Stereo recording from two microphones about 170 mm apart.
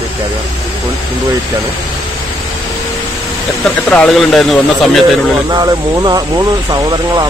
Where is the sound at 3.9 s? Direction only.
5° left (ahead or behind).